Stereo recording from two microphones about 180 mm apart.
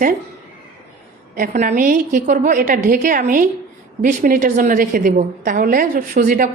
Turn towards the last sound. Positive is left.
turn(degrees=-45)  # may be behind; listen again after turning